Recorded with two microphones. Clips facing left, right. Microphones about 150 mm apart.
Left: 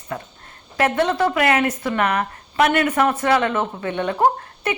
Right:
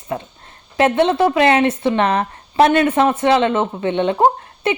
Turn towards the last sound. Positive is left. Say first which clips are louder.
# right 4 dB
turn(degrees=-25)  # may be behind; listen again after turning